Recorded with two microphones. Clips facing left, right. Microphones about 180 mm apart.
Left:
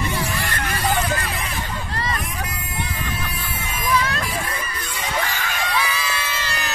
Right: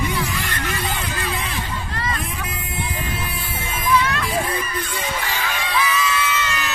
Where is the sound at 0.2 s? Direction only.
40° left (ahead or behind).